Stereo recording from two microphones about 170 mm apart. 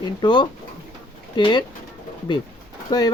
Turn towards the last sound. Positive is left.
turn(degrees=25)  # may be behind; listen again after turning